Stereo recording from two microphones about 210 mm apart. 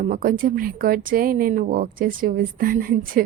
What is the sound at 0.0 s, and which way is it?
A woman's voice, 40° right (ahead or behind).